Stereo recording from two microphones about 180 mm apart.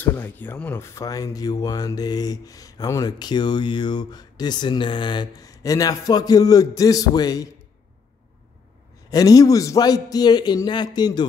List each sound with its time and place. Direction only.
0.0 s speech: 10° left (ahead or behind)
9.1 s speech: 20° left (ahead or behind)